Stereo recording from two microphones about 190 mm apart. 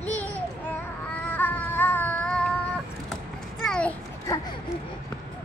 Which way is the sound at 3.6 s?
5° left (ahead or behind).